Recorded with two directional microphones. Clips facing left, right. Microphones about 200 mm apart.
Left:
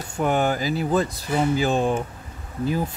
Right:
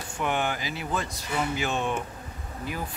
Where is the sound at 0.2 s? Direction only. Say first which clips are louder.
Left 7 dB; 40° left (ahead or behind).